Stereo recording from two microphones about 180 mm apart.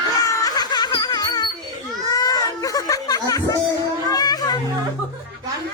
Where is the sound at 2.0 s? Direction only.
20° left (ahead or behind).